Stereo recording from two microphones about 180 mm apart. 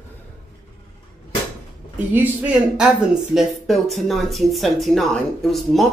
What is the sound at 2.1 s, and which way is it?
Speech, 5° right (ahead or behind).